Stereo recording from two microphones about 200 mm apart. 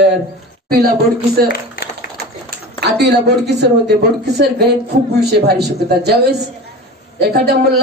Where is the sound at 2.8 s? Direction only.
55° right (ahead or behind).